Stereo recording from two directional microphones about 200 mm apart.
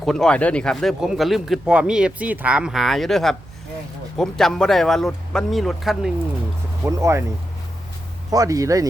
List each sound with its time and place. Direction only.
0.0 s speech: centre (ahead or behind)
6.8 s speech: 15° right (ahead or behind)
8.3 s speech: 15° right (ahead or behind)